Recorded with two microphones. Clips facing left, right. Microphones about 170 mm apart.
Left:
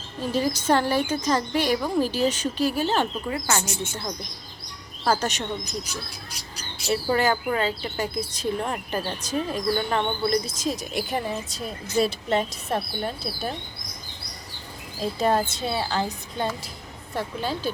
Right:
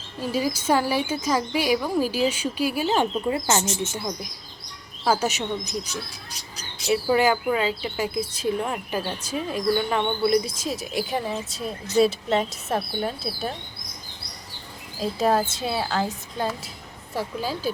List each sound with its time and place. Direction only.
0.2 s a woman's voice: 10° right (ahead or behind)
3.2 s speech: 25° right (ahead or behind)
3.9 s a woman's voice: 10° right (ahead or behind)
6.8 s a woman's voice: 10° right (ahead or behind)
15.0 s speech: 5° right (ahead or behind)